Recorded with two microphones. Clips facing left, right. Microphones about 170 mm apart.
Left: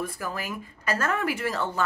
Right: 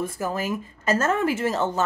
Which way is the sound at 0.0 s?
25° right (ahead or behind).